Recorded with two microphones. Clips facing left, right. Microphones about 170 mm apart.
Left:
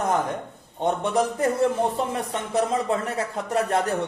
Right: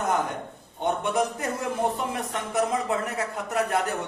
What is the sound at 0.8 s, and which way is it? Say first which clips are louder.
Speech: left 2 dB; 30° left (ahead or behind).